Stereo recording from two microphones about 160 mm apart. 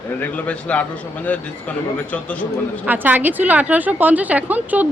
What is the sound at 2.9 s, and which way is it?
A woman's voice, 10° right (ahead or behind).